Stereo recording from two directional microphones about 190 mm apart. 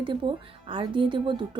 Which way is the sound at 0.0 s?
25° right (ahead or behind).